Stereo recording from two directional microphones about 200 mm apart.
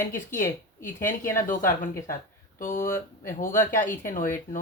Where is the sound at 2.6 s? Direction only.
45° left (ahead or behind).